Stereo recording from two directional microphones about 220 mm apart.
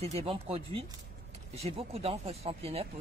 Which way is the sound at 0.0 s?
25° right (ahead or behind).